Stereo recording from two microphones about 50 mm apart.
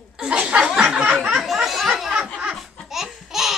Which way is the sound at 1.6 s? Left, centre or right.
Centre.